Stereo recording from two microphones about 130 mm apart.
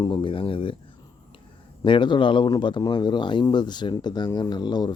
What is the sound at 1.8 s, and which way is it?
Speech, 40° left (ahead or behind).